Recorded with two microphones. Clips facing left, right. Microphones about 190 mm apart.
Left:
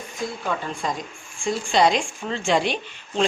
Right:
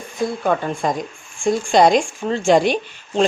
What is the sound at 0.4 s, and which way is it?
Speech, 50° right (ahead or behind).